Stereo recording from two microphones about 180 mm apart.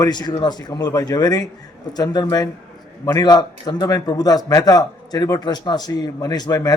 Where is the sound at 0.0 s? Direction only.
25° left (ahead or behind).